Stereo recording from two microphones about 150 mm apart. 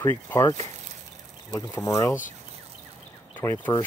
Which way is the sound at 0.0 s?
15° left (ahead or behind).